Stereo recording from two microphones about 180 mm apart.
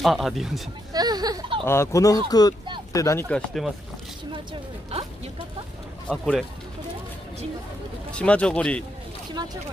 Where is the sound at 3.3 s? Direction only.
Centre (ahead or behind).